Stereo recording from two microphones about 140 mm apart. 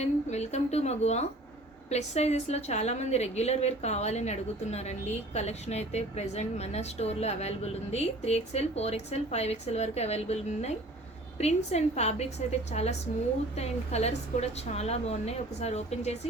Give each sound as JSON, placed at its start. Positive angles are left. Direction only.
{"t": 0.0, "sound": "a woman's voice", "side_deg": 50}